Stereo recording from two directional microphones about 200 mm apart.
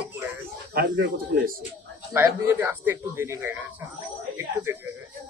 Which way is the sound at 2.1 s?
10° right (ahead or behind).